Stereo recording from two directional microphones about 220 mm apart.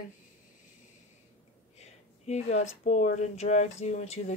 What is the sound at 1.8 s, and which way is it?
Speech, 30° left (ahead or behind).